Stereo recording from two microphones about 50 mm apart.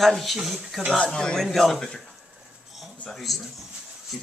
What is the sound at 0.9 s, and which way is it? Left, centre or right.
Speech, centre.